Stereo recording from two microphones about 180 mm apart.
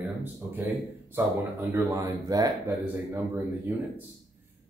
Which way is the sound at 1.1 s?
10° right (ahead or behind).